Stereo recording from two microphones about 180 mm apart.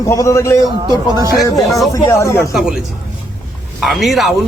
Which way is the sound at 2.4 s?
Centre (ahead or behind).